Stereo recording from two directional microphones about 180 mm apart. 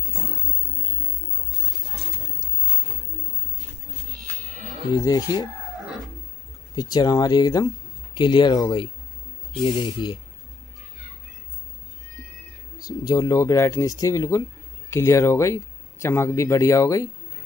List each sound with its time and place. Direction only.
4.4 s livestock: 45° right (ahead or behind)
4.9 s speech: 20° left (ahead or behind)
6.7 s speech: 20° left (ahead or behind)
12.7 s speech: 20° left (ahead or behind)